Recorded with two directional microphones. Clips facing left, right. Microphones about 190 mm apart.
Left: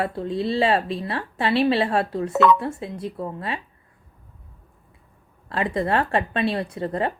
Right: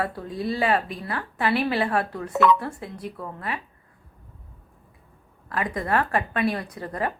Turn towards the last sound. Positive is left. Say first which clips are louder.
# left 4 dB
turn(degrees=25)  # may be behind; listen again after turning